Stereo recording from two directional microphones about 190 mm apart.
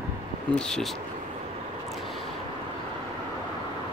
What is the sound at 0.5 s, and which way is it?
Speech, 5° left (ahead or behind).